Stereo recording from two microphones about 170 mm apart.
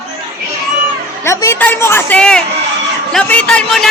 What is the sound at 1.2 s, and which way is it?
A woman's voice, 15° left (ahead or behind).